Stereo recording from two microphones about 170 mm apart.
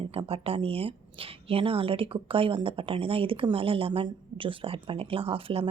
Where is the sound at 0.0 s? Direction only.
35° right (ahead or behind).